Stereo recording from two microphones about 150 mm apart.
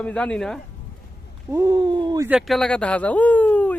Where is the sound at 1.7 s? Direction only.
30° right (ahead or behind).